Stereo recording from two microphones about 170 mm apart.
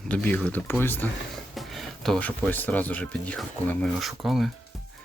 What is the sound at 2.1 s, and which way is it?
Speech, 10° left (ahead or behind).